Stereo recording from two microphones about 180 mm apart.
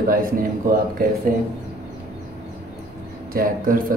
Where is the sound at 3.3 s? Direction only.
55° right (ahead or behind).